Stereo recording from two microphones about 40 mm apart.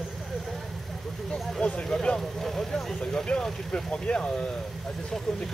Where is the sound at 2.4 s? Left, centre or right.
Centre.